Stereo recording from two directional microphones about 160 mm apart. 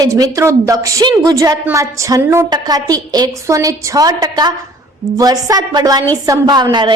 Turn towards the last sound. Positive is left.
turn(degrees=-25)  # may be behind; listen again after turning